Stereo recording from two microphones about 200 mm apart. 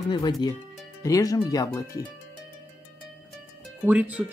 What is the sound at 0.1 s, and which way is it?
Speech, 20° left (ahead or behind).